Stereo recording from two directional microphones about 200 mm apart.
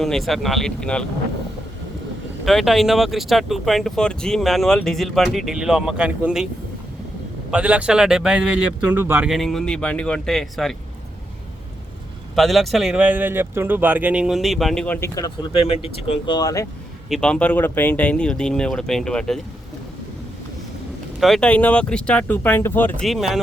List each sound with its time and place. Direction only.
0.0 s speech: centre (ahead or behind)
2.4 s speech: centre (ahead or behind)
7.5 s speech: 5° right (ahead or behind)
12.4 s speech: centre (ahead or behind)
15.6 s speech: 30° left (ahead or behind)
17.1 s speech: 5° left (ahead or behind)
21.2 s speech: centre (ahead or behind)